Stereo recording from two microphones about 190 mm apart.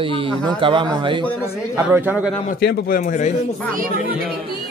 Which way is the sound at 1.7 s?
10° right (ahead or behind).